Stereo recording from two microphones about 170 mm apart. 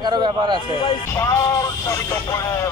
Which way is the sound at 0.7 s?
30° left (ahead or behind).